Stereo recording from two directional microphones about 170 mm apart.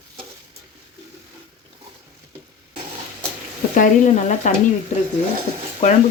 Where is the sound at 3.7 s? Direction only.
50° left (ahead or behind).